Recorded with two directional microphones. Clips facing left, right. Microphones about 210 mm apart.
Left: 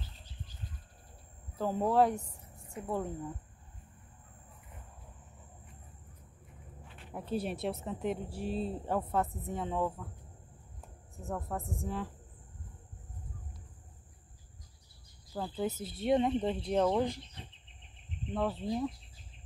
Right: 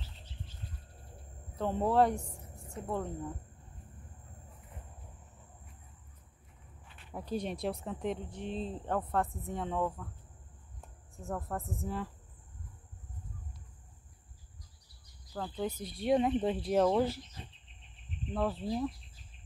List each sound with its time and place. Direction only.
1.6 s speech: centre (ahead or behind)
7.2 s speech: 5° left (ahead or behind)
11.1 s speech: centre (ahead or behind)
15.3 s speech: 5° left (ahead or behind)
18.3 s speech: centre (ahead or behind)